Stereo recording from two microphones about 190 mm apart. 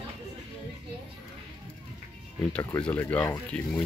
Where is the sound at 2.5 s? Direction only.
10° left (ahead or behind).